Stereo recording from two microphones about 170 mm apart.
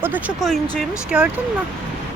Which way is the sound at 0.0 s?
10° right (ahead or behind).